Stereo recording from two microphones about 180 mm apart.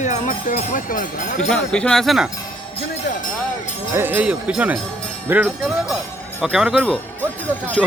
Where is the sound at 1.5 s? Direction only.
5° left (ahead or behind).